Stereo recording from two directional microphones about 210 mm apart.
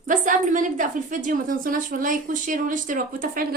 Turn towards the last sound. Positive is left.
turn(degrees=-40)  # may be behind; listen again after turning